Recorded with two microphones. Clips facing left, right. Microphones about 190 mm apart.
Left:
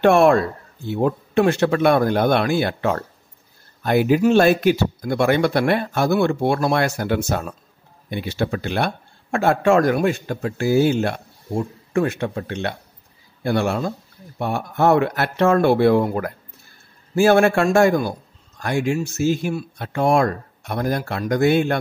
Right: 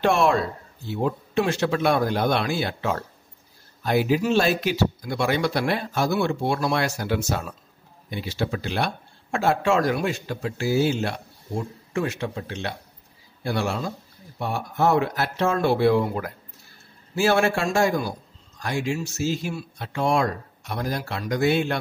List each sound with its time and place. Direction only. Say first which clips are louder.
0.0 s a man's voice: left 6 dB; 55° left (ahead or behind)